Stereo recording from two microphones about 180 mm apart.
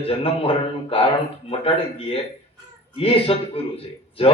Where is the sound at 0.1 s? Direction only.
30° left (ahead or behind).